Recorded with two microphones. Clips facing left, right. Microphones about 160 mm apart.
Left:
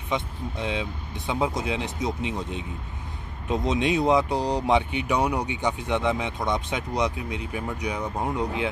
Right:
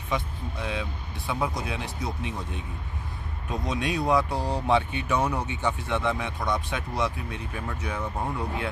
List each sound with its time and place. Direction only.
0.1 s speech: 20° left (ahead or behind)